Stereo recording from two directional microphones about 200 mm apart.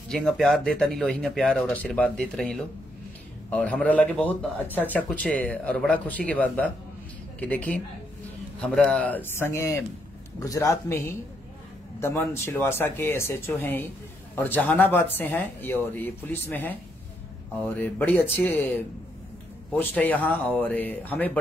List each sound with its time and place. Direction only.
0.1 s speech: centre (ahead or behind)
19.7 s speech: 10° left (ahead or behind)